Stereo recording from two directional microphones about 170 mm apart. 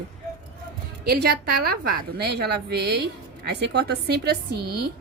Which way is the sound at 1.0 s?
65° right (ahead or behind).